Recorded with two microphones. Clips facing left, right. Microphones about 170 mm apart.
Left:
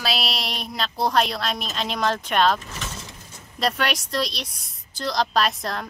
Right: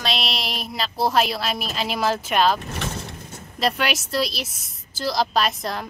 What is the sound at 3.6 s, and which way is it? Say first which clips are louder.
Speech: right 1 dB; centre (ahead or behind).